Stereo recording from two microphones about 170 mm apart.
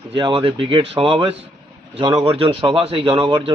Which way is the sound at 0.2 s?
30° right (ahead or behind).